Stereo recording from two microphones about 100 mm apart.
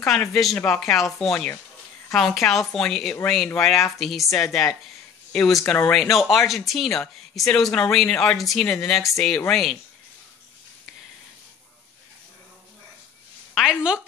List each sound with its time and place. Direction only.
0.0 s speech: 5° left (ahead or behind)
13.6 s a woman's voice: 5° right (ahead or behind)